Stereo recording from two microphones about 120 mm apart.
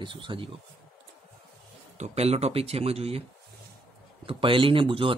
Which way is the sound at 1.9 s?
60° right (ahead or behind).